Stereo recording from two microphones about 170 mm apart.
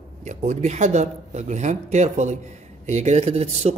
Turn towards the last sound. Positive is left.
turn(degrees=-40)  # may be behind; listen again after turning